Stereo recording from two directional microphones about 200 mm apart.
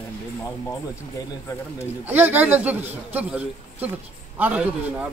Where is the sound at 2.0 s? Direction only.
10° right (ahead or behind).